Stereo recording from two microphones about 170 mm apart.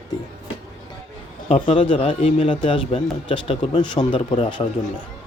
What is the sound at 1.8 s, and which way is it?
A man's voice, 30° left (ahead or behind).